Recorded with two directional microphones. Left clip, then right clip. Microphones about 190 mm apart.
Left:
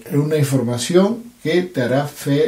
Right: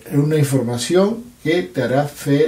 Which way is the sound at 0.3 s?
30° left (ahead or behind).